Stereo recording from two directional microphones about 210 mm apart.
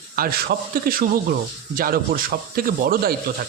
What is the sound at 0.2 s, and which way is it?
Speech, 45° right (ahead or behind).